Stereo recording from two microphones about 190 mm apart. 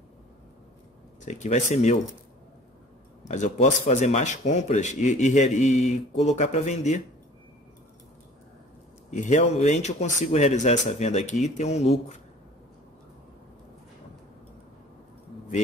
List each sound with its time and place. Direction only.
1.2 s speech: 40° left (ahead or behind)
3.3 s speech: 35° left (ahead or behind)
9.1 s speech: 40° left (ahead or behind)